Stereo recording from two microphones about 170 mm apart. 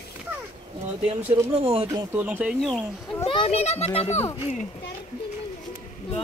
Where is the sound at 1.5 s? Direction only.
35° right (ahead or behind).